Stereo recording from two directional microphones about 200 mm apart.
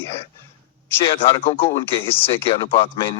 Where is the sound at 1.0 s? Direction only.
25° left (ahead or behind).